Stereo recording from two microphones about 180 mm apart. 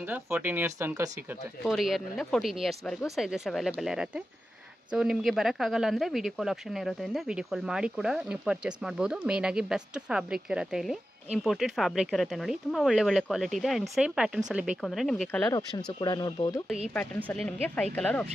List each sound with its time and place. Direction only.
0.1 s speech: 10° right (ahead or behind)
1.6 s speech: centre (ahead or behind)
15.5 s speech: 20° left (ahead or behind)
17.3 s speech: 5° left (ahead or behind)